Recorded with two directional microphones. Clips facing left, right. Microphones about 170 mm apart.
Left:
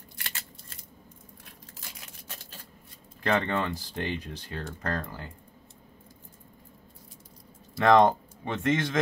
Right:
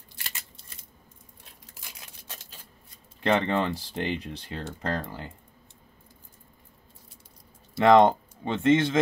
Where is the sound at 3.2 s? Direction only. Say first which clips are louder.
Right 3 dB; 25° right (ahead or behind).